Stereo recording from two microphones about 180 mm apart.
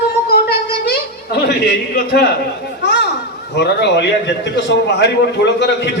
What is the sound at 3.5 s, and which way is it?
A man's voice, 70° left (ahead or behind).